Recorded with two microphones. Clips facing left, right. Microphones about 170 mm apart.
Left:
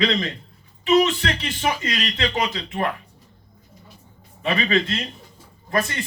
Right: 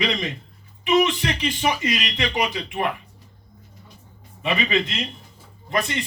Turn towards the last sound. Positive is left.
turn(degrees=-20)  # may be behind; listen again after turning